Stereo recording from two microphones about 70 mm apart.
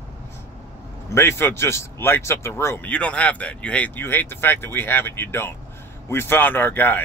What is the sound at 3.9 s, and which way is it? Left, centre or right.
Speech, left.